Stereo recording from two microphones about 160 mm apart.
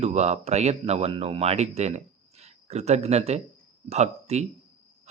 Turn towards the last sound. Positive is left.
turn(degrees=-45)  # may be behind; listen again after turning